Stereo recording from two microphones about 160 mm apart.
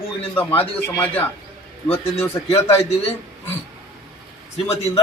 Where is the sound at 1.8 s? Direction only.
40° left (ahead or behind).